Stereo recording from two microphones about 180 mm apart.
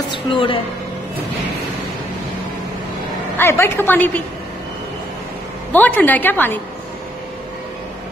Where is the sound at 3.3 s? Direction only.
15° left (ahead or behind).